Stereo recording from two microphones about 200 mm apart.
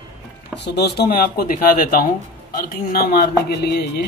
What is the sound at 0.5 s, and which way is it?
Speech, 55° left (ahead or behind).